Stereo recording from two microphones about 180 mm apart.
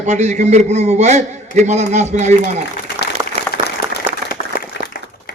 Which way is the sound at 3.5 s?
55° left (ahead or behind).